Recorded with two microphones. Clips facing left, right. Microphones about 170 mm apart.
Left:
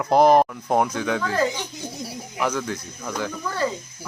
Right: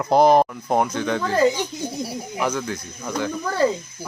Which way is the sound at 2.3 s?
Centre (ahead or behind).